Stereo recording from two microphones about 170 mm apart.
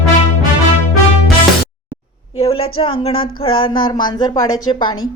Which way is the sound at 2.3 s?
35° left (ahead or behind).